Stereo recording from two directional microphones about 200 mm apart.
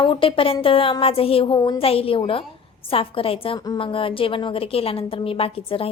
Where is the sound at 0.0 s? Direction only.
25° left (ahead or behind).